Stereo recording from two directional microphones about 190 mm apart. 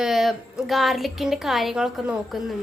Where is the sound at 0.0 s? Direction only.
Centre (ahead or behind).